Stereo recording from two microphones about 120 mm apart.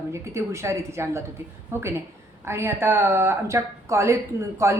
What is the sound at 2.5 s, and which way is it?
A woman's voice, 20° right (ahead or behind).